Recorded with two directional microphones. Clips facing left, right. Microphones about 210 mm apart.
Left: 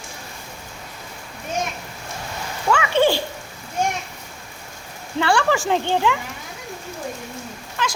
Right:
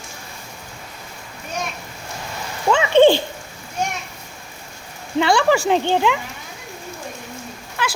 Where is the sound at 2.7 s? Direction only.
25° right (ahead or behind).